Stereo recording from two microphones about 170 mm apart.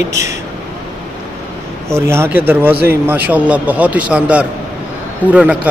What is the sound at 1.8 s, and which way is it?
A man's voice, 15° right (ahead or behind).